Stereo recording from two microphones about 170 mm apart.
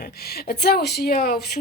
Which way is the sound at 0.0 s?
65° left (ahead or behind).